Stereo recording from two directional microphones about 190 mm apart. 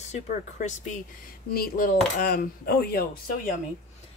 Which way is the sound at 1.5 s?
50° left (ahead or behind).